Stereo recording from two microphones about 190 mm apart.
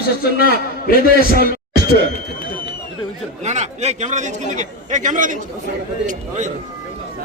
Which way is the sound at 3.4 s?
35° right (ahead or behind).